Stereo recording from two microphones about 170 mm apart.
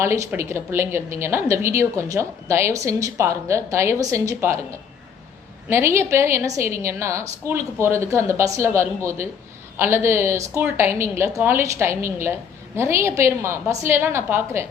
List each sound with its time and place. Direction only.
0.0 s a woman's voice: 15° right (ahead or behind)
5.6 s a woman's voice: 15° right (ahead or behind)